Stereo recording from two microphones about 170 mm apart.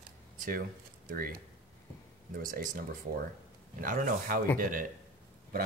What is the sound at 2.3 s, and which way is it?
Speech, 55° right (ahead or behind).